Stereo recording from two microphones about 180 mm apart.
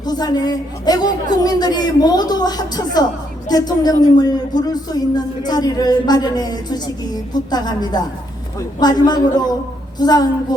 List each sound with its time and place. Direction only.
0.0 s a man's voice: 20° left (ahead or behind)